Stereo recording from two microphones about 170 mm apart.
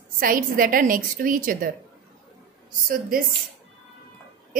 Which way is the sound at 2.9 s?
55° right (ahead or behind).